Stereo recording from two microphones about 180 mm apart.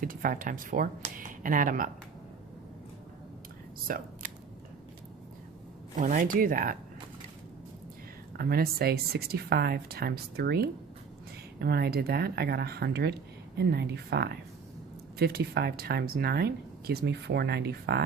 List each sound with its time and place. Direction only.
0.0 s speech: 50° right (ahead or behind)
3.8 s speech: 50° right (ahead or behind)
6.0 s speech: 45° right (ahead or behind)
8.4 s speech: 60° right (ahead or behind)